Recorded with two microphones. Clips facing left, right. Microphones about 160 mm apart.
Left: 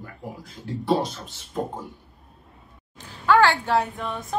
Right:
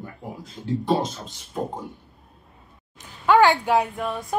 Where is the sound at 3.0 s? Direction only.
20° right (ahead or behind).